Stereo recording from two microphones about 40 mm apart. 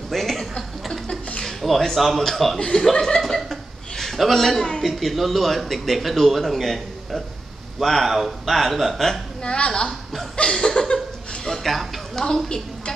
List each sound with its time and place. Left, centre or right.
0.1 s chuckle: centre
1.6 s speech: centre
2.7 s chuckle: centre
4.8 s speech: centre
9.4 s a woman's voice: left
10.3 s a sound: left
11.4 s a sound: centre
12.2 s a woman's voice: centre